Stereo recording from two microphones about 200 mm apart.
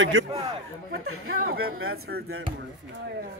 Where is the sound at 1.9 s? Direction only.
50° right (ahead or behind).